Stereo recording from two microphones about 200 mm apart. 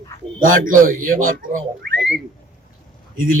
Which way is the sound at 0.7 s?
45° right (ahead or behind).